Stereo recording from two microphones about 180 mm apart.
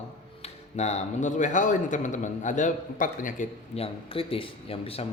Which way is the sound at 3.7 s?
30° left (ahead or behind).